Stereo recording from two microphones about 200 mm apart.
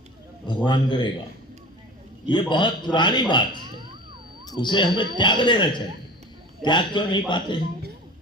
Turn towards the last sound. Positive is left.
turn(degrees=25)  # may be behind; listen again after turning